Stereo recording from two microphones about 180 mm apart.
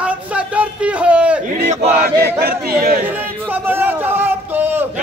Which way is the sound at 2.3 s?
60° right (ahead or behind).